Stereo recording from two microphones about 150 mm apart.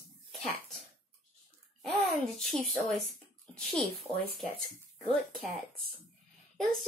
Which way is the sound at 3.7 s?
Centre (ahead or behind).